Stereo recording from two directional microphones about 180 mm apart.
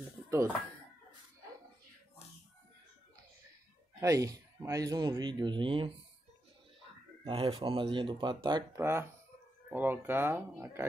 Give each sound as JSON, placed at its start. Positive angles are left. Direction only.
{"t": 4.0, "sound": "speech", "side_deg": -20}
{"t": 7.2, "sound": "speech", "side_deg": -30}
{"t": 8.7, "sound": "speech", "side_deg": -15}